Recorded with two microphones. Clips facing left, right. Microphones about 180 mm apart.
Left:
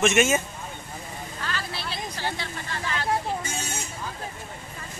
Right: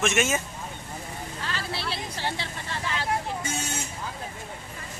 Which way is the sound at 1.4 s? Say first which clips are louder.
Even; 25° right (ahead or behind).